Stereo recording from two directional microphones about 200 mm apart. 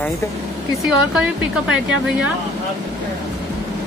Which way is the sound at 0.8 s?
5° right (ahead or behind).